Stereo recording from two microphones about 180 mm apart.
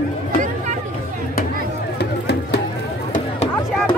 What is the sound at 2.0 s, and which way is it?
Music, 70° left (ahead or behind).